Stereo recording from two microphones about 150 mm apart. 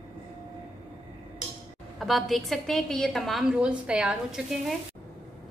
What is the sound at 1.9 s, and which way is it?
A woman's voice, centre (ahead or behind).